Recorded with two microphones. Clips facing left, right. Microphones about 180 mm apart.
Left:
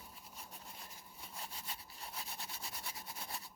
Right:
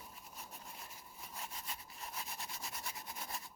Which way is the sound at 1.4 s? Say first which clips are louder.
Right 1 dB; 30° left (ahead or behind).